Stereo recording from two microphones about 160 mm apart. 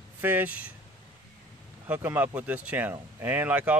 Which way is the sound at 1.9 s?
10° right (ahead or behind).